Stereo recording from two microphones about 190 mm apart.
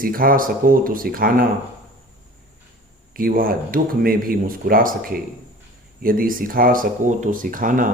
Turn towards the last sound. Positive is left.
turn(degrees=-45)  # may be behind; listen again after turning